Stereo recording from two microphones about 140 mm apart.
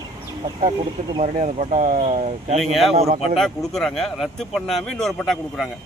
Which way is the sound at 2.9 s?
45° right (ahead or behind).